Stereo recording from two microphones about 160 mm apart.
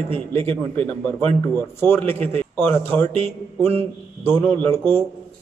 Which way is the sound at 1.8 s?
10° left (ahead or behind).